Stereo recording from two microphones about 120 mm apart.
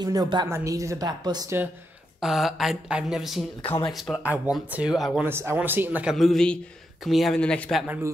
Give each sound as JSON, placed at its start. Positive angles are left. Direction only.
{"t": 0.0, "sound": "a woman's voice", "side_deg": -35}
{"t": 2.1, "sound": "speech", "side_deg": -5}
{"t": 4.2, "sound": "speech", "side_deg": -10}
{"t": 5.2, "sound": "speech", "side_deg": -20}
{"t": 6.1, "sound": "speech", "side_deg": 0}